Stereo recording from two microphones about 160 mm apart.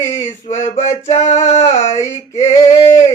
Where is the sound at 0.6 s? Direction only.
45° left (ahead or behind).